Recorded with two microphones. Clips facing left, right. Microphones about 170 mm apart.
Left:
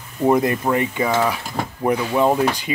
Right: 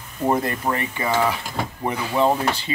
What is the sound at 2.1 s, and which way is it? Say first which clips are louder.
Speech: even; 10° left (ahead or behind).